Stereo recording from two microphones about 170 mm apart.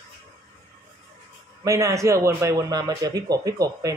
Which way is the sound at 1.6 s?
20° right (ahead or behind).